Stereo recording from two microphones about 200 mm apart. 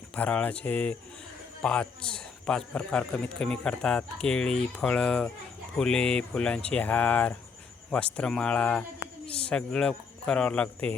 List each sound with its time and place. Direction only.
0.2 s a man's voice: 5° left (ahead or behind)